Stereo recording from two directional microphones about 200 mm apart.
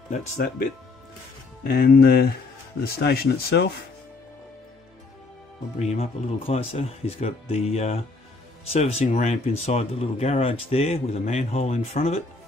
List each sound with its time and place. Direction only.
0.1 s speech: 45° left (ahead or behind)
5.8 s speech: 30° left (ahead or behind)